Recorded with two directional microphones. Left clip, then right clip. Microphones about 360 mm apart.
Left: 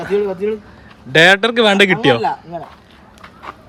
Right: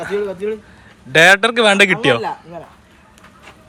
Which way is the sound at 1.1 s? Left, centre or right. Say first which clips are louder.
Even; centre.